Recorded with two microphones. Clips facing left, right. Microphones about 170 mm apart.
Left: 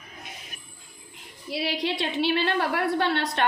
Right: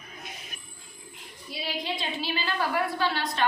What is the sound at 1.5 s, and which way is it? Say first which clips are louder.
A woman's voice: left 6 dB; 75° left (ahead or behind).